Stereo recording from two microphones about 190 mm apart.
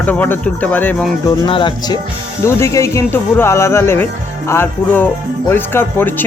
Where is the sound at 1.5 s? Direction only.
25° left (ahead or behind).